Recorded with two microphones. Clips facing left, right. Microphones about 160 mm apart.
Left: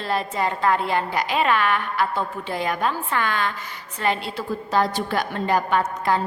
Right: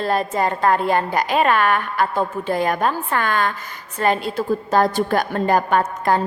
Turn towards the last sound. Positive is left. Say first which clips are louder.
# right 3 dB
turn(degrees=-50)  # may be behind; listen again after turning